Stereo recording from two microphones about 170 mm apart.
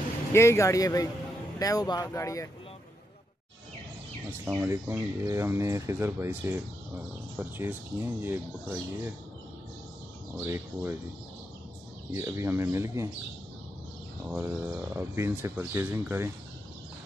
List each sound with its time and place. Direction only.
0.3 s speech: 15° left (ahead or behind)
4.5 s speech: 15° right (ahead or behind)
10.4 s speech: 15° right (ahead or behind)
12.1 s speech: 15° right (ahead or behind)
14.2 s speech: 10° right (ahead or behind)